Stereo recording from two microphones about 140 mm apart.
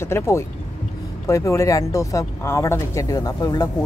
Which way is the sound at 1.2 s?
20° left (ahead or behind).